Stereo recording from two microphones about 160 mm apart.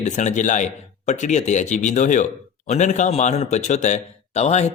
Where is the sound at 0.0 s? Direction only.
50° left (ahead or behind).